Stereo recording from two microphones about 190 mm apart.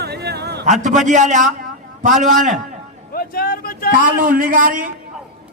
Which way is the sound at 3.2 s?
50° left (ahead or behind).